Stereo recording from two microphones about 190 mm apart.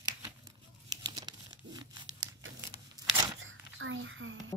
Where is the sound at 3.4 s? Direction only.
90° right.